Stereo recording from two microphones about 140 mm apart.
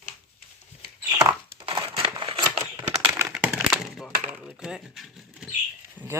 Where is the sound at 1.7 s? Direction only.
35° right (ahead or behind).